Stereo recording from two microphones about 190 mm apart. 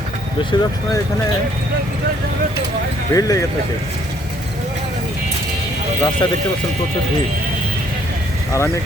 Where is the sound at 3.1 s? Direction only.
20° left (ahead or behind).